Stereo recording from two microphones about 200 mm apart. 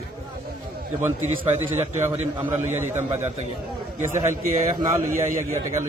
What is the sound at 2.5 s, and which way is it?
A man's voice, 10° right (ahead or behind).